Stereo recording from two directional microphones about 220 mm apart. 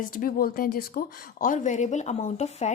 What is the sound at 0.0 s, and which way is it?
Speech, 40° left (ahead or behind).